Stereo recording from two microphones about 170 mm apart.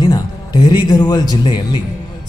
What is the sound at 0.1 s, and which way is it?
Music, 25° left (ahead or behind).